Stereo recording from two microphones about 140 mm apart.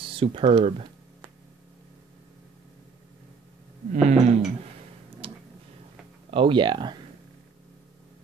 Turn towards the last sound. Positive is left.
turn(degrees=-30)  # may be behind; listen again after turning